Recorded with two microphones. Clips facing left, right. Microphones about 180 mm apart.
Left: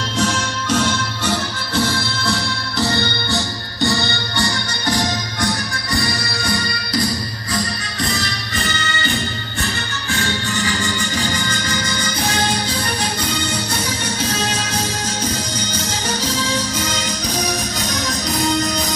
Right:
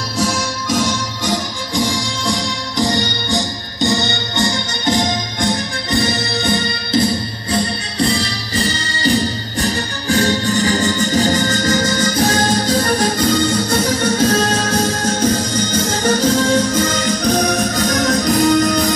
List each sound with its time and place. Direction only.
0.2 s music: 10° right (ahead or behind); by 18.9 s 50° right (ahead or behind)